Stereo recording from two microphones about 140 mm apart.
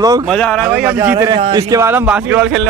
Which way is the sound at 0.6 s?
15° right (ahead or behind).